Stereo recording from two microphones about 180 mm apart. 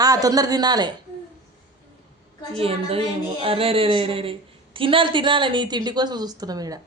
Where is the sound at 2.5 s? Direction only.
30° right (ahead or behind).